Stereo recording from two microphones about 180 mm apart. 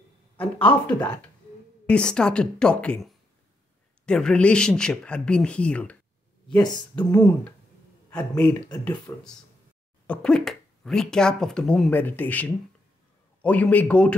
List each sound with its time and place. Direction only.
0.4 s speech: 5° left (ahead or behind)
6.5 s speech: 25° left (ahead or behind)
7.1 s a man's voice: 10° left (ahead or behind)
9.1 s speech: 20° left (ahead or behind)
10.0 s speech: 5° left (ahead or behind)